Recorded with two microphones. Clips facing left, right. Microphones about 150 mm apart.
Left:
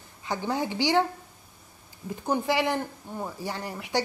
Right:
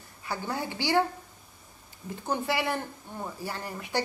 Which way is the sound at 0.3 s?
15° left (ahead or behind).